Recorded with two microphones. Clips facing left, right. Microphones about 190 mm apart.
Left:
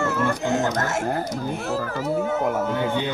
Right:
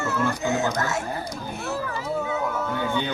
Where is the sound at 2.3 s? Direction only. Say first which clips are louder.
Left 4 dB; 45° left (ahead or behind).